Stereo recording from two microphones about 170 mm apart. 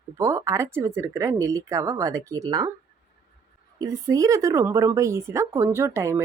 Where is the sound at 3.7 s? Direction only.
20° right (ahead or behind).